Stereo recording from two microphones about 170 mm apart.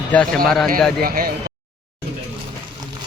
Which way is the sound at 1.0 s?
60° right (ahead or behind).